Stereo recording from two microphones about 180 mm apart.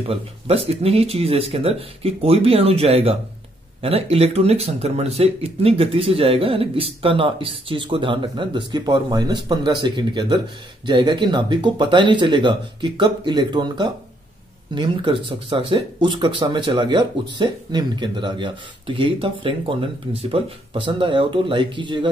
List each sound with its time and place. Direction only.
0.0 s speech: 35° right (ahead or behind)